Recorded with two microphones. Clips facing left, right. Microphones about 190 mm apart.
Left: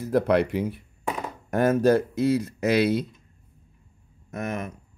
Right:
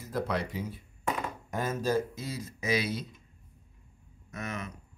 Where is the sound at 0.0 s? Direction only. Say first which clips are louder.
Left 11 dB; 65° left (ahead or behind).